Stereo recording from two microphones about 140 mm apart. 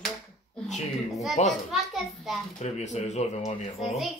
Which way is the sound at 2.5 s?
55° left (ahead or behind).